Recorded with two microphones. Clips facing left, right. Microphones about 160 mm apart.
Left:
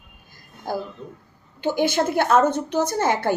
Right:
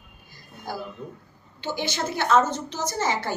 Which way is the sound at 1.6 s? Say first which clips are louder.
Left 8 dB; 55° left (ahead or behind).